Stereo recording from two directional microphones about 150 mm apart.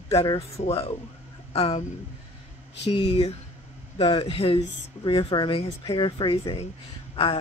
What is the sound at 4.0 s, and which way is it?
Speech, 35° left (ahead or behind).